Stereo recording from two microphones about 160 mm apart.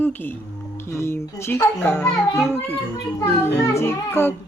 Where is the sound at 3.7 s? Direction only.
15° left (ahead or behind).